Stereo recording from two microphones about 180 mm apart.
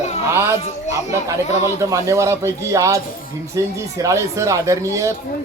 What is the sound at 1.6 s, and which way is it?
Speech, 15° right (ahead or behind).